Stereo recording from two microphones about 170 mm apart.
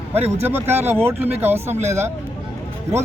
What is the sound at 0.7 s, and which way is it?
Speech, 10° right (ahead or behind).